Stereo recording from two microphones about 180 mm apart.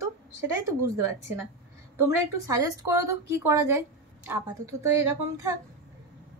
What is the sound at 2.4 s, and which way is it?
A woman's voice, 15° right (ahead or behind).